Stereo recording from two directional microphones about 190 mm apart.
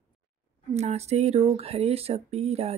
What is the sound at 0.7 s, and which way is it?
Speech, 35° right (ahead or behind).